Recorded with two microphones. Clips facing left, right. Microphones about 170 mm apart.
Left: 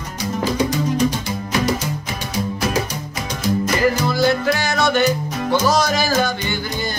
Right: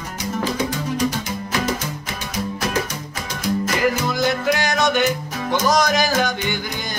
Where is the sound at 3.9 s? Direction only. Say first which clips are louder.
Left 3 dB; 15° right (ahead or behind).